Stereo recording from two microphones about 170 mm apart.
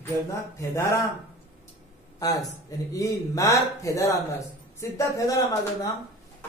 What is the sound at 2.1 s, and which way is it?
A man's voice, 20° left (ahead or behind).